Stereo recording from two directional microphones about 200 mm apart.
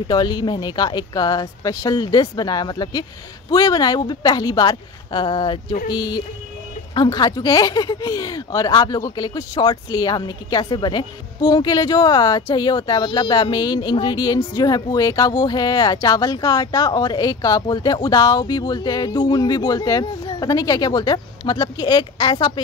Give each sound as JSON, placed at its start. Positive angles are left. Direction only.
{"t": 0.1, "sound": "speech", "side_deg": 20}